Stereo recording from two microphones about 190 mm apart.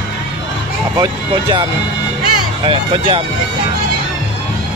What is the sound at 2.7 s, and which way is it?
Speech, 25° right (ahead or behind).